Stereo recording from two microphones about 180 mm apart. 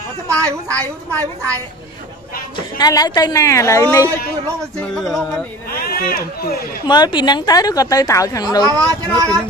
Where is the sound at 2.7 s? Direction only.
20° left (ahead or behind).